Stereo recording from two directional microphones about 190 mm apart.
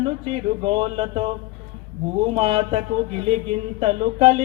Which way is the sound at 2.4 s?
30° right (ahead or behind).